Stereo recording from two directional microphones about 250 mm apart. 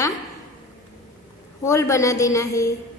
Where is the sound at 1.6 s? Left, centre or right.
Centre.